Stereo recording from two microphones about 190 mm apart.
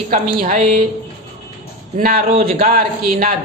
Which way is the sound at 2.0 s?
50° right (ahead or behind).